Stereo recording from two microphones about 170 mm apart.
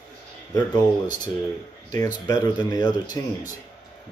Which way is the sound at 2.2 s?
20° left (ahead or behind).